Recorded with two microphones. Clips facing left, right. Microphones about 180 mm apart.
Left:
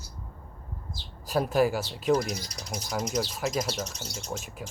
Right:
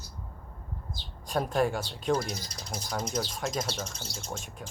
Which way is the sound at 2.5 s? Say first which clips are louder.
Left 2 dB; 30° right (ahead or behind).